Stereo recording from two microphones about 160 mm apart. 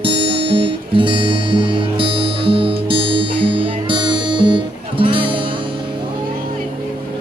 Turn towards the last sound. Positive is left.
turn(degrees=-30)  # may be behind; listen again after turning